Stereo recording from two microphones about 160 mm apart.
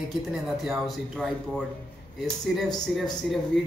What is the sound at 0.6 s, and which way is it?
Speech, centre (ahead or behind).